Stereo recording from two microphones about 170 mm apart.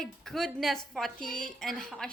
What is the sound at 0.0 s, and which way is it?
A woman's voice, centre (ahead or behind).